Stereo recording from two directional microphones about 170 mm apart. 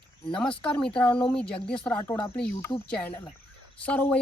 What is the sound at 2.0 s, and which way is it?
Speech, 20° left (ahead or behind).